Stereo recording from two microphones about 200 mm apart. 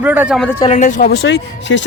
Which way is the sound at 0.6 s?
35° left (ahead or behind).